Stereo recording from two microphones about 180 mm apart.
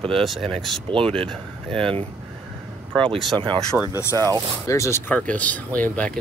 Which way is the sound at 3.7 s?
Centre (ahead or behind).